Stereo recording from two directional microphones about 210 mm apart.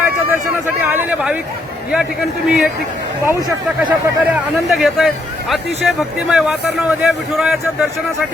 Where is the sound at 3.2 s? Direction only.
20° right (ahead or behind).